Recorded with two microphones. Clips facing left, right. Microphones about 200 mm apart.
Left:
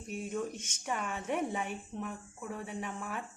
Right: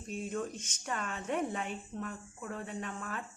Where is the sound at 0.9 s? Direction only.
15° left (ahead or behind).